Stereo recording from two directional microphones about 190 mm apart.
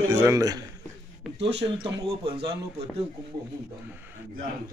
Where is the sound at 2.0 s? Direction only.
30° right (ahead or behind).